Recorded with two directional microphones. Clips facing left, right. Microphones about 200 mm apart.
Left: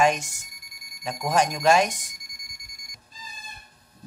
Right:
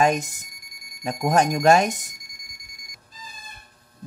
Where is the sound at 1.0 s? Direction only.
45° right (ahead or behind).